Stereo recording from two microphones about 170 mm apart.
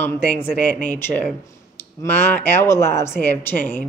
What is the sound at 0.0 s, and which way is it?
A woman's voice, 10° left (ahead or behind).